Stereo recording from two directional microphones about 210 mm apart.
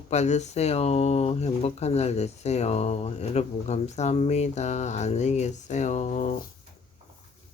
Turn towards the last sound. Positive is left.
turn(degrees=35)  # may be behind; listen again after turning